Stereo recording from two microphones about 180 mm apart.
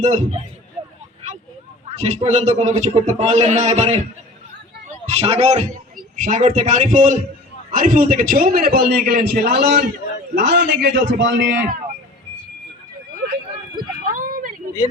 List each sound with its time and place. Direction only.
0.0 s a man's voice: 35° right (ahead or behind)
2.0 s a man's voice: 40° right (ahead or behind); by 11.7 s 80° right
14.2 s vehicle: 50° right (ahead or behind)